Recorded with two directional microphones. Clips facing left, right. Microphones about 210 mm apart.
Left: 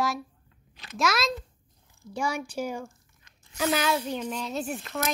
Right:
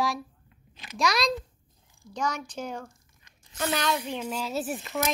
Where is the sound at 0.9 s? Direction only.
Centre (ahead or behind).